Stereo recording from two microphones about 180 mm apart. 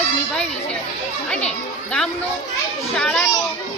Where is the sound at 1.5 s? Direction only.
5° left (ahead or behind).